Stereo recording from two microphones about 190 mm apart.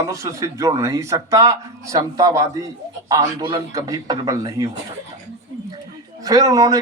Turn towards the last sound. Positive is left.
turn(degrees=-20)  # may be behind; listen again after turning